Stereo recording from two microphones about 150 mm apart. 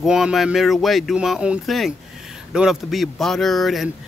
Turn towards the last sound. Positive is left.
turn(degrees=0)  # may be behind; listen again after turning